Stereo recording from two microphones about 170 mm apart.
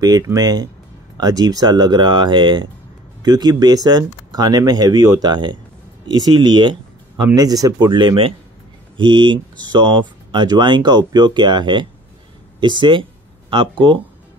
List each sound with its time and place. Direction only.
0.0 s speech: 20° right (ahead or behind)